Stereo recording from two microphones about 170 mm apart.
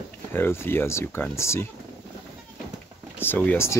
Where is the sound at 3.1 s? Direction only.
10° left (ahead or behind).